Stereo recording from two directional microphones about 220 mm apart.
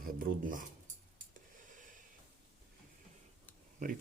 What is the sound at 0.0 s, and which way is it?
Speech, 40° right (ahead or behind).